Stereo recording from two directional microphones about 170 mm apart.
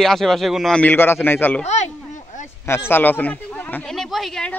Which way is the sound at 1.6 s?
40° left (ahead or behind).